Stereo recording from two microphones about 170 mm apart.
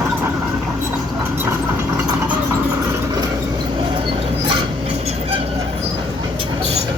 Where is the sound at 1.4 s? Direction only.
15° right (ahead or behind).